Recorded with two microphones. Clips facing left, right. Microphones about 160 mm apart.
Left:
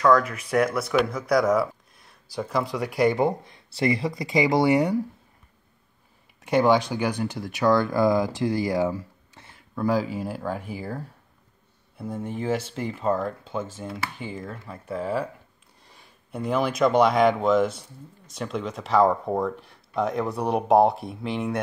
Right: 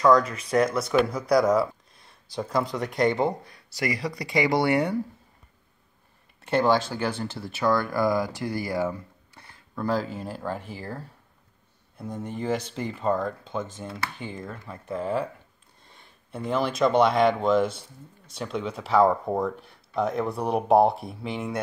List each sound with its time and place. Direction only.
0.0 s speech: 5° left (ahead or behind)
1.5 s a sound: centre (ahead or behind)
2.3 s speech: 5° left (ahead or behind)
3.2 s speech: 20° left (ahead or behind)
6.4 s speech: 15° left (ahead or behind)
9.3 s a sound: 20° left (ahead or behind)
9.8 s speech: 10° left (ahead or behind)